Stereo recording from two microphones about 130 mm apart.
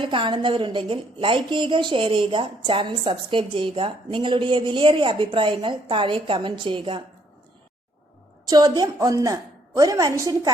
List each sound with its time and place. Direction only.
0.0 s a woman's voice: 40° right (ahead or behind)
8.4 s a woman's voice: 30° right (ahead or behind)